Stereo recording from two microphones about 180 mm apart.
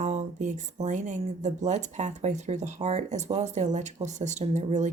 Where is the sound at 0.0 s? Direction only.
45° right (ahead or behind).